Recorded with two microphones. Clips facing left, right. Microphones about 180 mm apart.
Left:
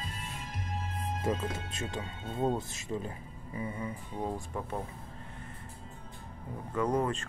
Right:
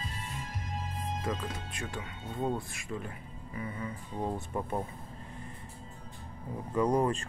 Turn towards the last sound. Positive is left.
turn(degrees=-15)  # may be behind; listen again after turning